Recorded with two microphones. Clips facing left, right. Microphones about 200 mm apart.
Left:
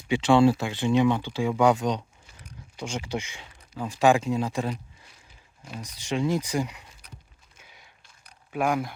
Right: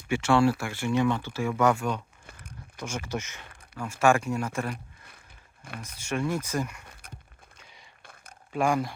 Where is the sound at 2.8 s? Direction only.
15° left (ahead or behind).